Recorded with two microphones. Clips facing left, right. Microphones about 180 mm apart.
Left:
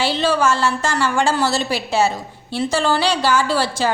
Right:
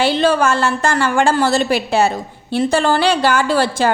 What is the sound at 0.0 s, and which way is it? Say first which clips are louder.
A woman's voice: right 3 dB; 55° right (ahead or behind).